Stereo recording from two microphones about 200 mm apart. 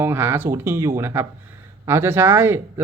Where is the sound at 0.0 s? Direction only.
10° right (ahead or behind).